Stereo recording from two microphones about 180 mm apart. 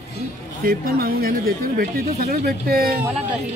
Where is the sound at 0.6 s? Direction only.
55° right (ahead or behind).